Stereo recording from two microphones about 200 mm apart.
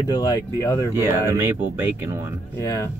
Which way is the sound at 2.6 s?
15° left (ahead or behind).